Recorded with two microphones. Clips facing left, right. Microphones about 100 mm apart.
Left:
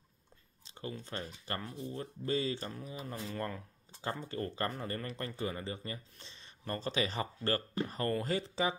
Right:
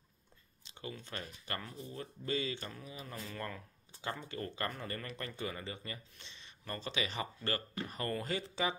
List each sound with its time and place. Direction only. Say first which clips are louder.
0.7 s speech: left 3 dB; 35° left (ahead or behind)